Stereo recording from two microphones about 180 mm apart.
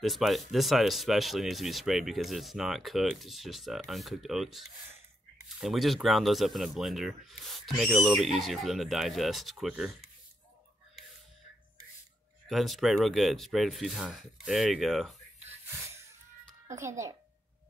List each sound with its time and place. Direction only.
0.0 s speech: centre (ahead or behind)
12.4 s speech: centre (ahead or behind)
15.9 s music: 15° right (ahead or behind)
16.6 s a child's voice: 15° right (ahead or behind)